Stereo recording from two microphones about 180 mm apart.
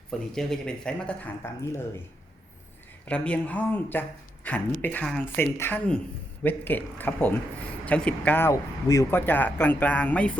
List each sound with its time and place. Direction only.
0.3 s speech: 5° left (ahead or behind)
3.1 s a woman's voice: 5° left (ahead or behind)